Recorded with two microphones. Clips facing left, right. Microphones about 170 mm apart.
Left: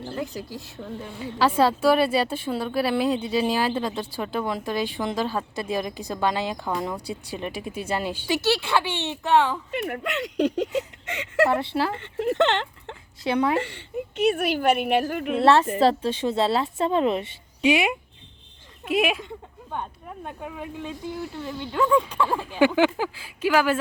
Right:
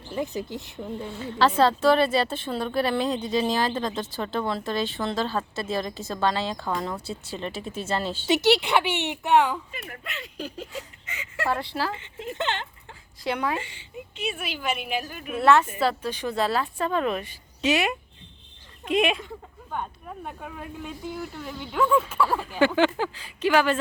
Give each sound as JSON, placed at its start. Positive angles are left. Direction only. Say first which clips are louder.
{"t": 0.1, "sound": "speech", "louder": "right 4 dB", "side_deg": -20}
{"t": 1.2, "sound": "a woman's voice", "louder": "even", "side_deg": 10}
{"t": 8.3, "sound": "speech", "louder": "right 3 dB", "side_deg": -20}
{"t": 9.7, "sound": "speech", "louder": "left 11 dB", "side_deg": 75}
{"t": 11.4, "sound": "a woman's voice", "louder": "left 1 dB", "side_deg": 20}
{"t": 11.9, "sound": "speech", "louder": "left 10 dB", "side_deg": 60}
{"t": 13.2, "sound": "a woman's voice", "louder": "left 5 dB", "side_deg": 25}
{"t": 13.6, "sound": "speech", "louder": "left 9 dB", "side_deg": 70}
{"t": 15.4, "sound": "a woman's voice", "louder": "left 2 dB", "side_deg": 30}
{"t": 17.6, "sound": "a woman's voice", "louder": "left 3 dB", "side_deg": 15}
{"t": 22.4, "sound": "a woman's voice", "louder": "left 3 dB", "side_deg": 10}